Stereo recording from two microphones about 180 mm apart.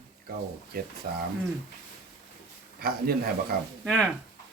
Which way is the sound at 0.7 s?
60° right (ahead or behind).